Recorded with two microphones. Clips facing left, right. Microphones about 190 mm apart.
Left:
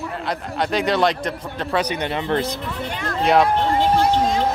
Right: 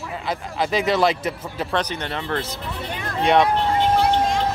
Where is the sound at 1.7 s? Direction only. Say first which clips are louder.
Left 4 dB; 10° left (ahead or behind).